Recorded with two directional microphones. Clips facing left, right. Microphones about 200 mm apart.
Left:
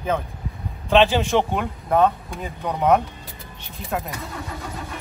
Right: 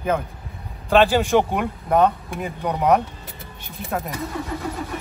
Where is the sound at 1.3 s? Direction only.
10° right (ahead or behind).